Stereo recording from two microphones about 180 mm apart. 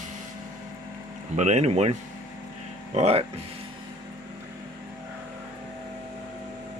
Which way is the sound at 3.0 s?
35° right (ahead or behind).